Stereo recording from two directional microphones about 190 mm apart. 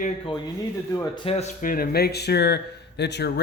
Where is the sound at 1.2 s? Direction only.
35° left (ahead or behind).